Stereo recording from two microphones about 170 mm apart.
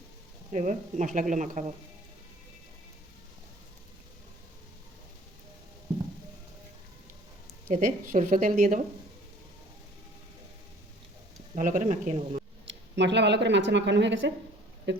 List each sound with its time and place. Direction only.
0.5 s speech: 45° right (ahead or behind)
7.7 s speech: 50° right (ahead or behind)
11.5 s speech: 50° right (ahead or behind)
12.6 s speech: 90° right